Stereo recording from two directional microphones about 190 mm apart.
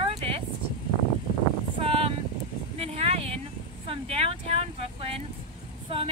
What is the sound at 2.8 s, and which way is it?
Speech, 30° right (ahead or behind).